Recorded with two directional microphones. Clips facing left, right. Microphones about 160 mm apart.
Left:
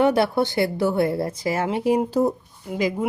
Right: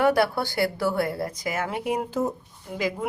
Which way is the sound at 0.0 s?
20° left (ahead or behind).